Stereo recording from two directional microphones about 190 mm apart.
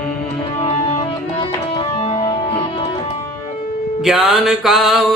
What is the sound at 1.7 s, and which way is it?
Music, 30° left (ahead or behind).